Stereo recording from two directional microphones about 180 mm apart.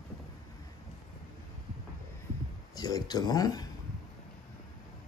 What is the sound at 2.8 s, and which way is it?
Speech, 20° left (ahead or behind).